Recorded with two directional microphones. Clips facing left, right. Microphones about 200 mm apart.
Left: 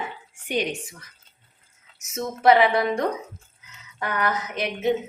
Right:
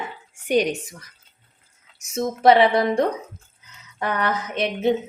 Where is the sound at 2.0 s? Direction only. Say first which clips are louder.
Right 5 dB; 30° right (ahead or behind).